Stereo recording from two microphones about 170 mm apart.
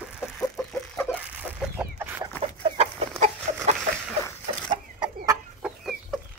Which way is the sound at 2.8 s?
40° right (ahead or behind).